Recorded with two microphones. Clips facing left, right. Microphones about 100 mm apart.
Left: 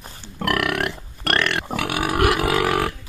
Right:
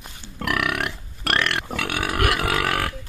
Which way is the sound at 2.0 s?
15° left (ahead or behind).